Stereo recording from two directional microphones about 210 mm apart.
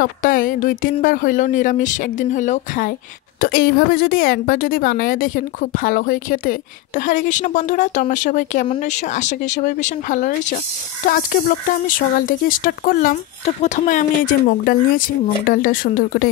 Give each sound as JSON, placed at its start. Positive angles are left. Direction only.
{"t": 0.0, "sound": "a woman's voice", "side_deg": 40}
{"t": 11.9, "sound": "speech", "side_deg": 40}